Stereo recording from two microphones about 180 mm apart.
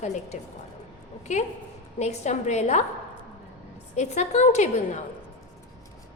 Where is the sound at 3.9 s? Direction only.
40° left (ahead or behind).